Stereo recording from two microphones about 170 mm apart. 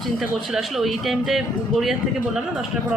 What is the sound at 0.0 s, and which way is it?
A woman's voice, centre (ahead or behind).